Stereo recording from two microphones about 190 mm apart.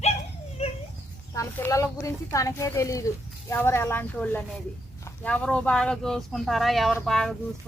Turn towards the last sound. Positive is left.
turn(degrees=5)  # may be behind; listen again after turning